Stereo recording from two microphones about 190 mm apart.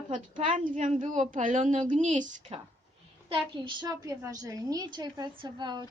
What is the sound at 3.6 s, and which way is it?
A woman's voice, 25° right (ahead or behind).